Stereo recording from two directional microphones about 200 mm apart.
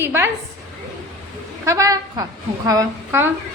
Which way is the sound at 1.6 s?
15° right (ahead or behind).